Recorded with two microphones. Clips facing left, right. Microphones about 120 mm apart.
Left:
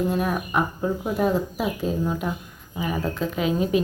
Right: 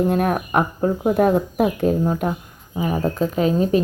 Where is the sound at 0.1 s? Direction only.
55° right (ahead or behind).